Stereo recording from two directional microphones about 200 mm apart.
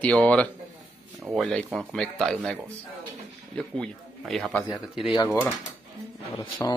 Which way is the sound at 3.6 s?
Centre (ahead or behind).